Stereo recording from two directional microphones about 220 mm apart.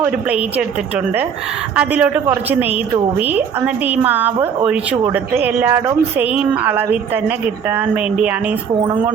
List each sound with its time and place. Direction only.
0.0 s speech: 5° right (ahead or behind)